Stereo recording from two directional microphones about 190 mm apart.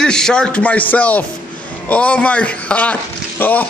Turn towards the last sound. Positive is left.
turn(degrees=10)  # may be behind; listen again after turning